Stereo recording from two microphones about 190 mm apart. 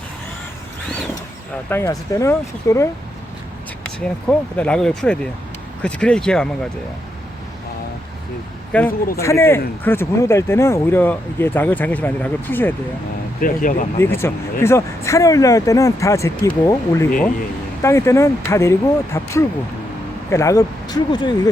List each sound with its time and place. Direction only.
1.7 s speech: 15° left (ahead or behind)
8.7 s speech: 5° left (ahead or behind)
13.4 s speech: 45° left (ahead or behind)
14.0 s speech: 15° left (ahead or behind)